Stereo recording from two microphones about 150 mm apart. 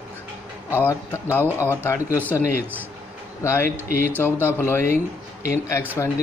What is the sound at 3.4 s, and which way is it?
Speech, 20° left (ahead or behind).